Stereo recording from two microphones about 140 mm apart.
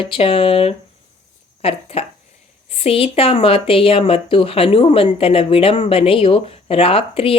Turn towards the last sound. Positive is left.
turn(degrees=40)  # may be behind; listen again after turning